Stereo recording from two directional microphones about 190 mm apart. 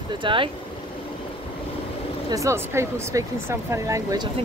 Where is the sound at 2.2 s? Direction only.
15° right (ahead or behind).